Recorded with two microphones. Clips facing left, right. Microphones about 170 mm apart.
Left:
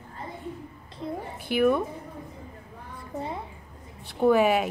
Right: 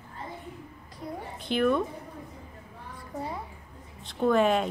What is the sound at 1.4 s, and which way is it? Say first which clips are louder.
Speech: left 2 dB; 10° left (ahead or behind).